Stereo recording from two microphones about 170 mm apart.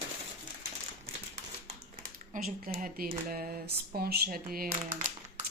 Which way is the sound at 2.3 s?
50° right (ahead or behind).